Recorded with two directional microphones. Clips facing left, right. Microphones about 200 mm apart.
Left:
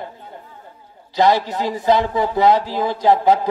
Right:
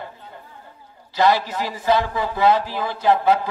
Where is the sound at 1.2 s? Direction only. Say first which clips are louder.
Left 2 dB; 15° left (ahead or behind).